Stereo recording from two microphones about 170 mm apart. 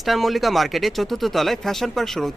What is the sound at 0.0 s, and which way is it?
Speech, centre (ahead or behind).